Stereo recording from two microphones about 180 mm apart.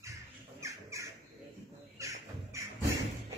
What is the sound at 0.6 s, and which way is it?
Squawk, 15° right (ahead or behind).